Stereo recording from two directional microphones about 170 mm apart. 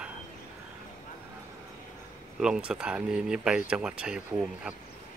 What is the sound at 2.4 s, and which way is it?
Speech, 5° right (ahead or behind).